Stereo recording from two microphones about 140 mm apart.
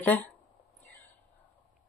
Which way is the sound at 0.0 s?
10° left (ahead or behind).